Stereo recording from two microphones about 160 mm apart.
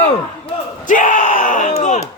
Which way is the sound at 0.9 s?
55° left (ahead or behind).